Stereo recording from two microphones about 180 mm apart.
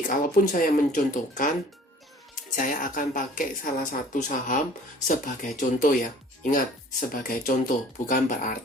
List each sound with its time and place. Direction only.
0.1 s speech: 50° left (ahead or behind)
2.6 s speech: 50° left (ahead or behind)